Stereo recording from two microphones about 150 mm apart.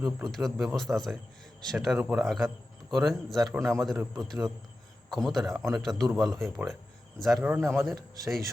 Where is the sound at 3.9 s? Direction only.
10° right (ahead or behind).